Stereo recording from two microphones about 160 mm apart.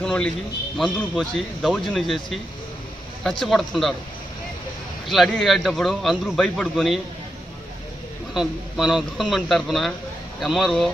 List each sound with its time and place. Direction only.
0.0 s a man's voice: 5° left (ahead or behind)
5.0 s a man's voice: centre (ahead or behind)
8.4 s a man's voice: 5° right (ahead or behind)